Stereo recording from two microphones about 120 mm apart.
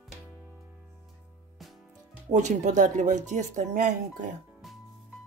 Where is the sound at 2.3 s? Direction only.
80° right.